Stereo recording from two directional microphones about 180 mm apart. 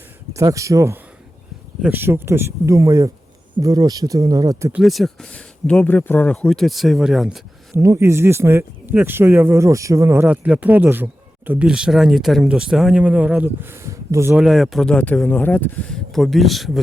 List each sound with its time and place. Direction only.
0.3 s speech: 15° right (ahead or behind)
4.7 s speech: centre (ahead or behind)
7.8 s speech: 15° right (ahead or behind)